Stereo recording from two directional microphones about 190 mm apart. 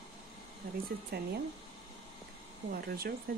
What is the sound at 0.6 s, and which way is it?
Speech, 55° right (ahead or behind).